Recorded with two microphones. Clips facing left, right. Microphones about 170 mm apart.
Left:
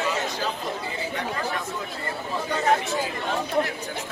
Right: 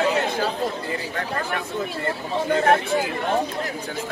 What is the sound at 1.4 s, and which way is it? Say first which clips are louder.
Speech: right 3 dB; 55° right (ahead or behind).